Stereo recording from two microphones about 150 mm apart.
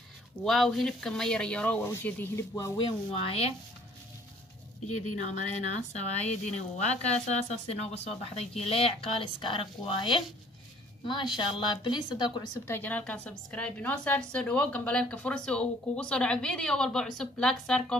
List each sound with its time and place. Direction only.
0.4 s a woman's voice: centre (ahead or behind)
2.5 s speech: 25° left (ahead or behind)
3.1 s speech: 40° left (ahead or behind)
5.8 s speech: 50° left (ahead or behind); by 12.4 s 30° left (ahead or behind)
12.6 s a woman's voice: 15° left (ahead or behind)